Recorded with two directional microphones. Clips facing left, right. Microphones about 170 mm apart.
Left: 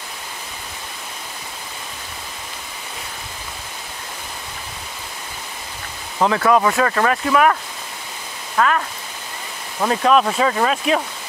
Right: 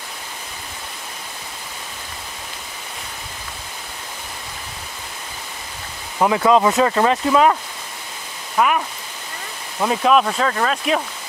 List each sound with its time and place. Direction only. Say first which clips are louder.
6.1 s speech: right 1 dB; 15° right (ahead or behind)
8.5 s speech: even; 10° right (ahead or behind); by 11.0 s 5° left (ahead or behind)